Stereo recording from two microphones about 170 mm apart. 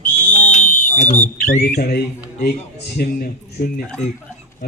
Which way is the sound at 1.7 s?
65° left (ahead or behind).